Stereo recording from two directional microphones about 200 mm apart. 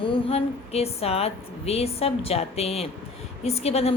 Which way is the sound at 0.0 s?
30° left (ahead or behind).